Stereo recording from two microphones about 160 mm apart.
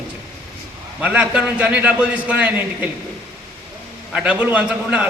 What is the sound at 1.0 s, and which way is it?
A man's voice, 10° right (ahead or behind).